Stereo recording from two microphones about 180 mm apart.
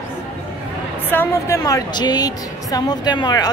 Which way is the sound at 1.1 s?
15° left (ahead or behind).